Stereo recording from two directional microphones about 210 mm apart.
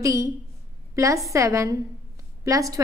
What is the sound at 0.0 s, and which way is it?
A woman's voice, 15° right (ahead or behind).